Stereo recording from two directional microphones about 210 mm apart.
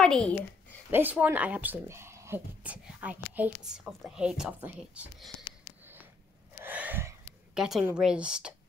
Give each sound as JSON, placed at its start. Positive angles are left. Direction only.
{"t": 0.0, "sound": "a woman's voice", "side_deg": 5}
{"t": 0.9, "sound": "speech", "side_deg": -10}
{"t": 6.6, "sound": "gasp", "side_deg": -10}
{"t": 7.6, "sound": "a woman's voice", "side_deg": -5}